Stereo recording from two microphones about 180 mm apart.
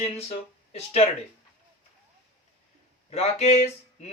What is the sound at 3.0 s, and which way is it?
Speech, 35° left (ahead or behind).